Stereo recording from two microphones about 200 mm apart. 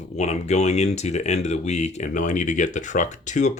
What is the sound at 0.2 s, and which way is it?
Speech, 35° left (ahead or behind).